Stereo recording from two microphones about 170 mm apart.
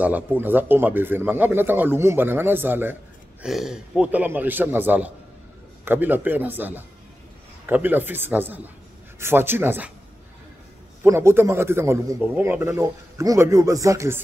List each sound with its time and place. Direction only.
0.0 s a man's voice: 10° right (ahead or behind)
11.1 s a man's voice: 15° right (ahead or behind)